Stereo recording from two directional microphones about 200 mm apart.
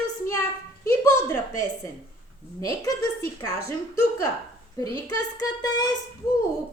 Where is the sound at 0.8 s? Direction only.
15° left (ahead or behind).